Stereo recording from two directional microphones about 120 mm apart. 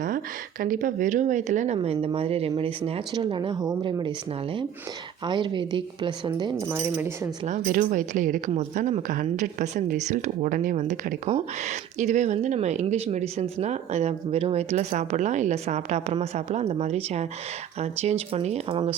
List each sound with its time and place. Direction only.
0.8 s speech: 90° right; by 3.0 s 55° right (ahead or behind)
3.2 s a woman's voice: 40° right (ahead or behind)
5.2 s a woman's voice: 40° right (ahead or behind)
6.6 s speech: 20° right (ahead or behind)
7.4 s speech: 90° right; by 18.8 s 55° right (ahead or behind)